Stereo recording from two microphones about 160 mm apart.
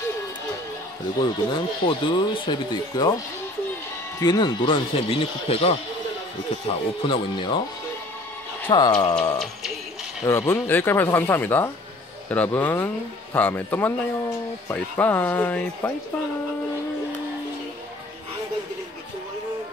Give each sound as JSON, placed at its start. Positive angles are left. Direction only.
{"t": 1.2, "sound": "speech", "side_deg": 30}
{"t": 4.2, "sound": "speech", "side_deg": 25}
{"t": 8.6, "sound": "speech", "side_deg": 25}
{"t": 10.2, "sound": "speech", "side_deg": 15}